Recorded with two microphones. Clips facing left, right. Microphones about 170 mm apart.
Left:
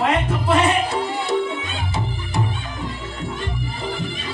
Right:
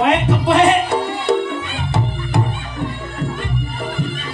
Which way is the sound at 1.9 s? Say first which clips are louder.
Right 6 dB; 65° right (ahead or behind).